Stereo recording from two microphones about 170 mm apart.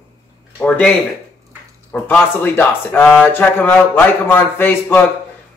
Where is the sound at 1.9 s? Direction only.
10° left (ahead or behind).